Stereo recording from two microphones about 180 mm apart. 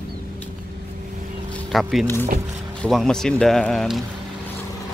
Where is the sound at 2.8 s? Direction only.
5° left (ahead or behind).